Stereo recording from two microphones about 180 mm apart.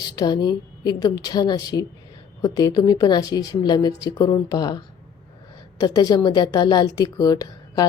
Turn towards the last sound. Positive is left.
turn(degrees=20)  # may be behind; listen again after turning